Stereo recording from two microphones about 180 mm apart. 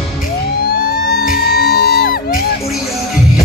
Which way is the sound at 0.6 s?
55° left (ahead or behind).